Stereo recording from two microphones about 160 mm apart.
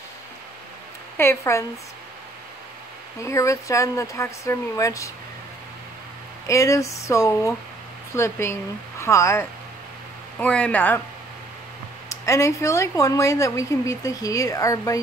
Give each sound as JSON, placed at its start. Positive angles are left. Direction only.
{"t": 1.1, "sound": "speech", "side_deg": 15}
{"t": 3.2, "sound": "speech", "side_deg": 20}
{"t": 6.4, "sound": "speech", "side_deg": 20}
{"t": 12.1, "sound": "speech", "side_deg": 20}